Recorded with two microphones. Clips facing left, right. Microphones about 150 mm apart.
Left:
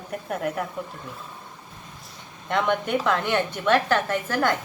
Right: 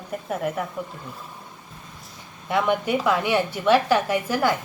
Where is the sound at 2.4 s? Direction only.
5° right (ahead or behind).